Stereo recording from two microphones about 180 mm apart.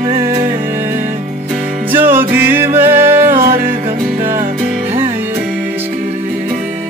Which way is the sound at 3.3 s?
55° right (ahead or behind).